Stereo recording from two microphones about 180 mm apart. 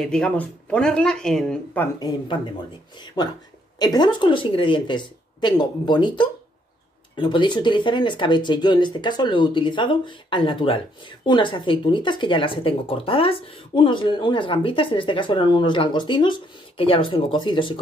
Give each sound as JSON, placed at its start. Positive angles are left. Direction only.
{"t": 0.0, "sound": "speech", "side_deg": 5}
{"t": 2.0, "sound": "speech", "side_deg": 20}
{"t": 3.8, "sound": "speech", "side_deg": 25}